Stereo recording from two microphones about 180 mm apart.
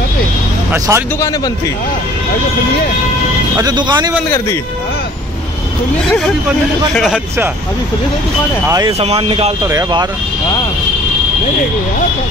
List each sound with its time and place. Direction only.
3.5 s speech: 25° right (ahead or behind)
6.0 s speech: 5° left (ahead or behind)
8.6 s speech: 20° right (ahead or behind)
9.0 s speech: 35° right (ahead or behind)
9.6 s speech: 20° right (ahead or behind)